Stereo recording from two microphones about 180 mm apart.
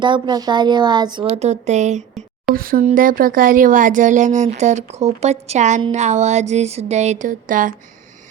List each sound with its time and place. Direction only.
0.0 s speech: 25° right (ahead or behind)
1.4 s speech: 40° right (ahead or behind)
2.6 s speech: 50° right (ahead or behind)